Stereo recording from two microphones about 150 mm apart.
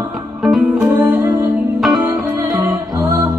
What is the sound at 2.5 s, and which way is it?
Music, 25° right (ahead or behind).